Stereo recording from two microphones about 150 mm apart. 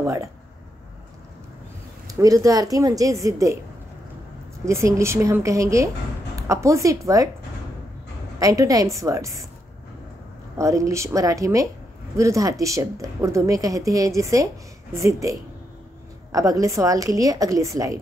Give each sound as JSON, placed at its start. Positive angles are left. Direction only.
{"t": 0.0, "sound": "speech", "side_deg": -20}
{"t": 2.0, "sound": "a woman's voice", "side_deg": -20}
{"t": 4.6, "sound": "a woman's voice", "side_deg": -20}
{"t": 8.4, "sound": "a woman's voice", "side_deg": -20}
{"t": 10.6, "sound": "a woman's voice", "side_deg": -20}